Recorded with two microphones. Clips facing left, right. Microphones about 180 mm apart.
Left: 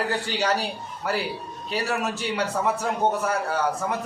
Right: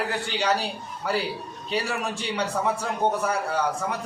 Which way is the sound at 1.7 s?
Centre (ahead or behind).